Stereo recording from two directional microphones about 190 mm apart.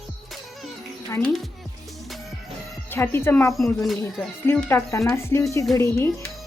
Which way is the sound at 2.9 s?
10° left (ahead or behind).